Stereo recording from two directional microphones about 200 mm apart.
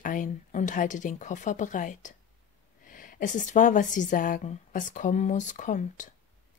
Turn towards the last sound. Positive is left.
turn(degrees=40)  # may be behind; listen again after turning